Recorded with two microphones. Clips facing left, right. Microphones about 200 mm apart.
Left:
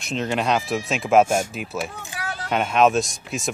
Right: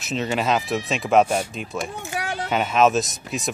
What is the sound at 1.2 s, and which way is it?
Speech, 45° left (ahead or behind).